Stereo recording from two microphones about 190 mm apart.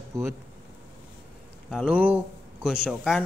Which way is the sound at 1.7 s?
5° right (ahead or behind).